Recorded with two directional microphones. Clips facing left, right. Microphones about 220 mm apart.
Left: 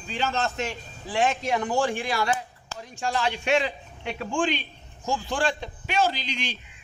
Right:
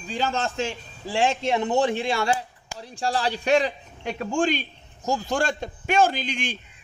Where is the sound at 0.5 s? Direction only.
30° right (ahead or behind).